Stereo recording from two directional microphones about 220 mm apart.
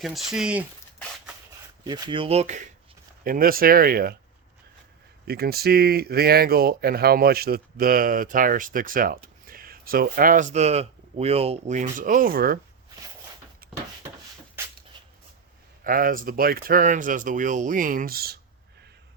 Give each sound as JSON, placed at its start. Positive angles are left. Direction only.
{"t": 0.0, "sound": "speech", "side_deg": 0}
{"t": 1.8, "sound": "speech", "side_deg": -20}
{"t": 3.2, "sound": "speech", "side_deg": -40}
{"t": 5.2, "sound": "speech", "side_deg": -45}
{"t": 14.6, "sound": "a sound", "side_deg": -10}
{"t": 15.8, "sound": "speech", "side_deg": -40}